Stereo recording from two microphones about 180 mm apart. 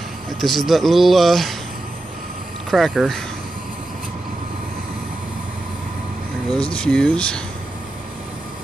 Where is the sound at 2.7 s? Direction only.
Centre (ahead or behind).